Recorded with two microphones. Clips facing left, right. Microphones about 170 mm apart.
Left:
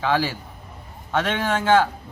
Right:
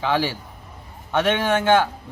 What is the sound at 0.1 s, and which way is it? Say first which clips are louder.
Speech: even; 25° right (ahead or behind).